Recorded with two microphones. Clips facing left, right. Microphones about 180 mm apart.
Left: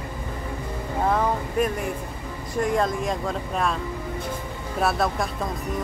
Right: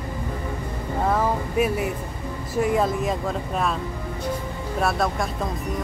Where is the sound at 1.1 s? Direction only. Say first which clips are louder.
Right 1 dB; 5° right (ahead or behind).